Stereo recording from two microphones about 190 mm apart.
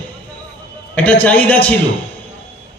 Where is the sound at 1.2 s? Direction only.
10° left (ahead or behind).